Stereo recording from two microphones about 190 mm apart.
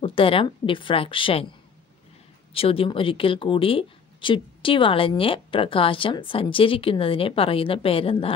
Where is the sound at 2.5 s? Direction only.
30° left (ahead or behind).